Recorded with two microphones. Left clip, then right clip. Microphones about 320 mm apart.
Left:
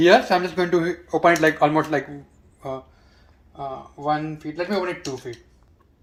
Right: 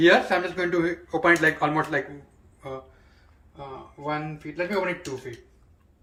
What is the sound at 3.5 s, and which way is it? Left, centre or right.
Speech, centre.